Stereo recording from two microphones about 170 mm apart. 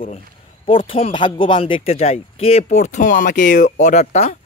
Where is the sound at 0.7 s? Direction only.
30° left (ahead or behind).